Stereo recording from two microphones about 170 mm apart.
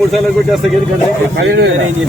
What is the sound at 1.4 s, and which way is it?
Speech, 70° right (ahead or behind).